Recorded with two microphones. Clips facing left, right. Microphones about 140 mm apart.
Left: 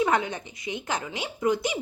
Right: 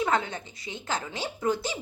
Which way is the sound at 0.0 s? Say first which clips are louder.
Left 3 dB; 15° left (ahead or behind).